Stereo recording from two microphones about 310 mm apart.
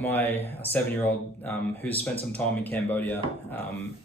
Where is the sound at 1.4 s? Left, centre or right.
Centre.